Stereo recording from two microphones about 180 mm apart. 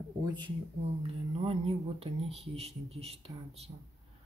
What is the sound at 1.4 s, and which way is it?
Speech, 35° right (ahead or behind).